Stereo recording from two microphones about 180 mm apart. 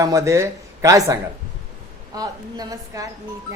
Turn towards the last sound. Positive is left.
turn(degrees=-20)  # may be behind; listen again after turning